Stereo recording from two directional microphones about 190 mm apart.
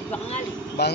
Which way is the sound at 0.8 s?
60° left (ahead or behind).